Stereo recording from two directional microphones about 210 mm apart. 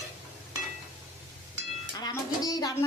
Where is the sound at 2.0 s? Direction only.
20° left (ahead or behind).